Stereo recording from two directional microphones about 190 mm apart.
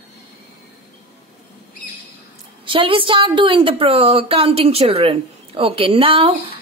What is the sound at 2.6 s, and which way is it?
A woman's voice, 25° right (ahead or behind).